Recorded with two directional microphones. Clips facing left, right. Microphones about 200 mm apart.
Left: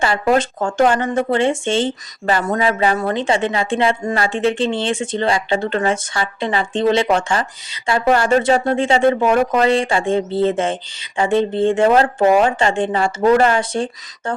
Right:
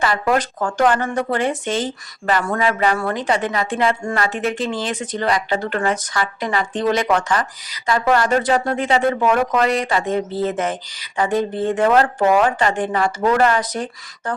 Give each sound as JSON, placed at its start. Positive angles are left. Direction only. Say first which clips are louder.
{"t": 0.0, "sound": "speech", "louder": "left 3 dB", "side_deg": 25}